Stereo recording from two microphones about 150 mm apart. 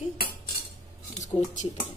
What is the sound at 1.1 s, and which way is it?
Speech, 50° left (ahead or behind).